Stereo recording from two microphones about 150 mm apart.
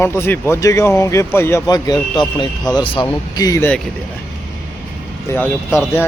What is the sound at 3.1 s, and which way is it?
Speech, 25° left (ahead or behind).